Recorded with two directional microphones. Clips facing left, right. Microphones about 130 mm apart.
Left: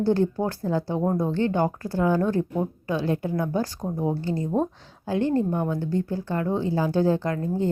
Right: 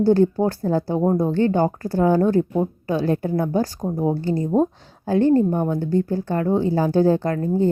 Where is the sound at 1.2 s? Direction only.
40° right (ahead or behind).